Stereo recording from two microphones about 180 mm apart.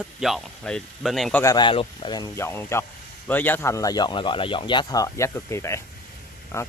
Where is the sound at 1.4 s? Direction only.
25° left (ahead or behind).